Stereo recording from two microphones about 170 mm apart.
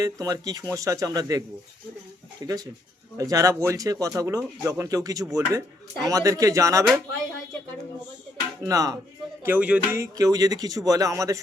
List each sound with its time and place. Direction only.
0.0 s speech: 20° right (ahead or behind)
8.6 s speech: 20° right (ahead or behind)